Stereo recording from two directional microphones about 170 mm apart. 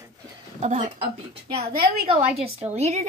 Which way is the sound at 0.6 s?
40° right (ahead or behind).